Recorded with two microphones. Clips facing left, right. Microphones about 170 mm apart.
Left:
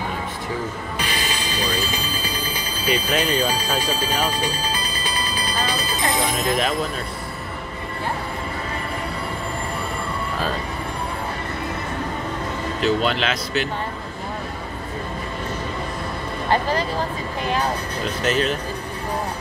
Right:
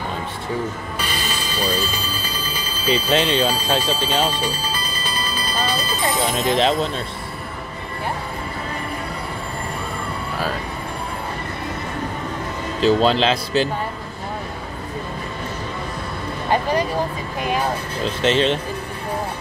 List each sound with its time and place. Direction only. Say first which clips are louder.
0.9 s music: even; 15° left (ahead or behind)
3.2 s alarm: right 2 dB; 10° left (ahead or behind)
6.3 s speech: right 3 dB; 30° right (ahead or behind)
12.8 s speech: right 5 dB; 30° right (ahead or behind)
18.0 s speech: right 4 dB; 25° right (ahead or behind)